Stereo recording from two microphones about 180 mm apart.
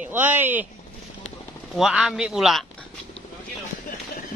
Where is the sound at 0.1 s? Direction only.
10° right (ahead or behind).